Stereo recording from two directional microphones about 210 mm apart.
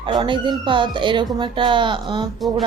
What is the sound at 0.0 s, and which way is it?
Speech, 25° right (ahead or behind).